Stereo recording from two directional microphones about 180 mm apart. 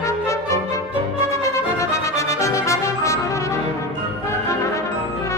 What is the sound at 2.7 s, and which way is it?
Brass instrument, 15° left (ahead or behind).